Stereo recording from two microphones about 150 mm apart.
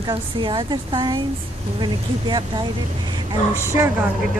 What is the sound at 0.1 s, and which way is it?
A woman's voice, 35° right (ahead or behind).